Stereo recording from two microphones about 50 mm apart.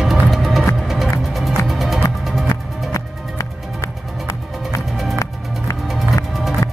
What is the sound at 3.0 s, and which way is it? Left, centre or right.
Music, left.